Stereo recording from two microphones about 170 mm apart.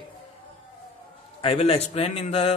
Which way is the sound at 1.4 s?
35° left (ahead or behind).